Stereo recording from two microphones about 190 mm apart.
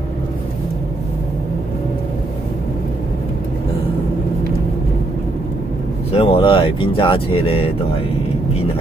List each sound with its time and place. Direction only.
6.1 s speech: 30° left (ahead or behind)